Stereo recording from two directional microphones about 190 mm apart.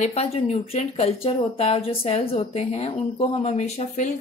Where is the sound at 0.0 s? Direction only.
35° left (ahead or behind).